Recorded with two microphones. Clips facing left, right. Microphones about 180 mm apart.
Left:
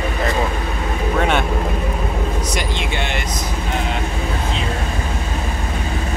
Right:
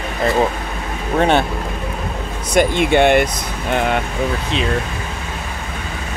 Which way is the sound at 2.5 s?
55° right (ahead or behind).